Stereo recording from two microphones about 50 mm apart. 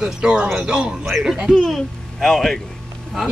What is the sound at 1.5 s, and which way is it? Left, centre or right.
Speech, centre.